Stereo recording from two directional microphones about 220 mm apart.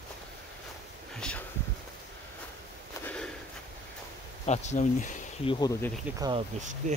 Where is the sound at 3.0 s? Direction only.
5° left (ahead or behind).